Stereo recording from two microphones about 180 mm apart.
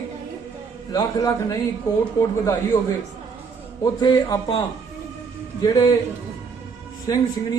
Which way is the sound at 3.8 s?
20° left (ahead or behind).